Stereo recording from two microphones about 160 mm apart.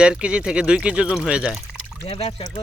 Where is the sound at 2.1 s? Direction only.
35° left (ahead or behind).